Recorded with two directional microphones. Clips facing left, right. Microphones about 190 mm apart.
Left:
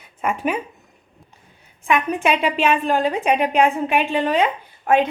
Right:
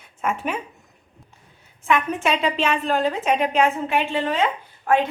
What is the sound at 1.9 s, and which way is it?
A woman's voice, 15° left (ahead or behind).